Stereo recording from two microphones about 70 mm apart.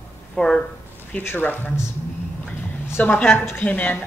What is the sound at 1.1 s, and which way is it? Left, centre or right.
Speech, left.